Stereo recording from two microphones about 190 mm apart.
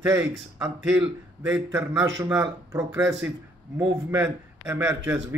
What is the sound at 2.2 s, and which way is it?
Speech, 15° right (ahead or behind).